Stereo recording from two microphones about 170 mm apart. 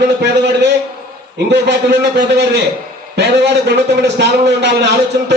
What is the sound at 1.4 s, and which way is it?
A man's voice, 80° right.